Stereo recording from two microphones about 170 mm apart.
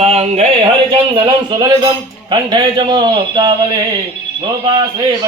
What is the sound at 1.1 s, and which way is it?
A man's voice, 25° right (ahead or behind).